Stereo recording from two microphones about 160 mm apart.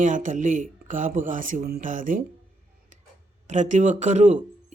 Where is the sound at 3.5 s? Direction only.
50° right (ahead or behind).